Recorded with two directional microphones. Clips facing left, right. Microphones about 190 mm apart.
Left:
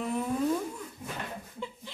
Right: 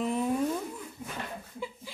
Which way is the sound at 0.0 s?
15° right (ahead or behind).